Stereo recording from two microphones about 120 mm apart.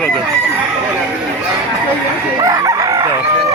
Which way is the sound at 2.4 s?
30° right (ahead or behind).